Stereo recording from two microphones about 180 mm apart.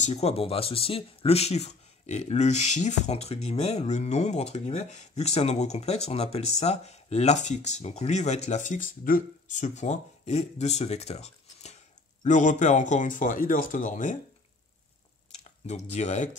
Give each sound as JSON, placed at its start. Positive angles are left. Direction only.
{"t": 0.0, "sound": "speech", "side_deg": 35}
{"t": 15.3, "sound": "speech", "side_deg": 40}